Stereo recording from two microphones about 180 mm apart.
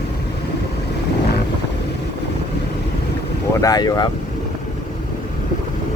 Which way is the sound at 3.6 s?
20° left (ahead or behind).